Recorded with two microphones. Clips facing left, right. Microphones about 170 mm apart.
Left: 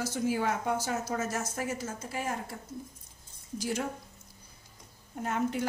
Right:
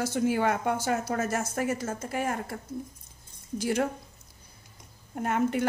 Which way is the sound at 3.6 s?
60° right (ahead or behind).